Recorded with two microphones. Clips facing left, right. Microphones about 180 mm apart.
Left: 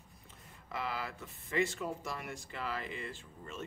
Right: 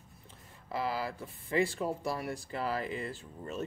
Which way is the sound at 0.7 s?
35° right (ahead or behind).